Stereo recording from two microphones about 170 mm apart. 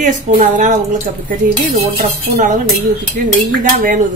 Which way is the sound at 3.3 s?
50° right (ahead or behind).